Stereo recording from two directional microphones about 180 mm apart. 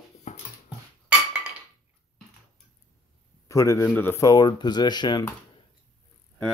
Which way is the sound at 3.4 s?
15° left (ahead or behind).